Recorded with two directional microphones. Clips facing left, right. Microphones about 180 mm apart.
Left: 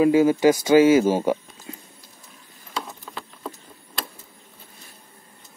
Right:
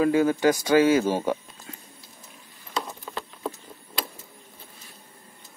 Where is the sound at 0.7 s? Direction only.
25° left (ahead or behind).